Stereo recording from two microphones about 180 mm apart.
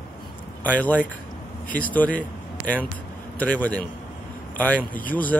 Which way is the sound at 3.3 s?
10° left (ahead or behind).